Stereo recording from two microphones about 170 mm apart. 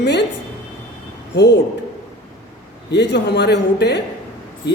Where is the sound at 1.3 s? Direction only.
90° left.